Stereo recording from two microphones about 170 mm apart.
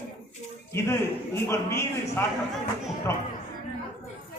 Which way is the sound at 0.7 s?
15° left (ahead or behind).